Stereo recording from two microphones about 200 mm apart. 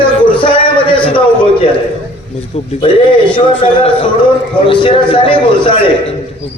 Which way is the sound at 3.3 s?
25° left (ahead or behind).